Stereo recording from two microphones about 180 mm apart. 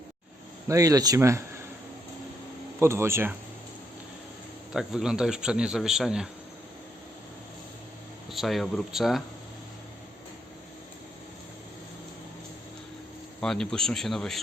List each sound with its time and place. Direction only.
0.7 s speech: 20° right (ahead or behind)
2.7 s speech: 15° right (ahead or behind)
4.7 s a man's voice: centre (ahead or behind)
8.3 s a man's voice: centre (ahead or behind)
13.4 s a man's voice: 5° left (ahead or behind)